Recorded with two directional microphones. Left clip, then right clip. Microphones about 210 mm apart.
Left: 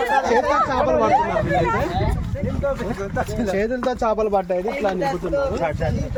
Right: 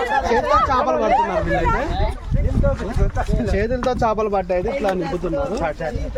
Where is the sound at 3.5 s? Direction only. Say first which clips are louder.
Right 1 dB; 20° right (ahead or behind).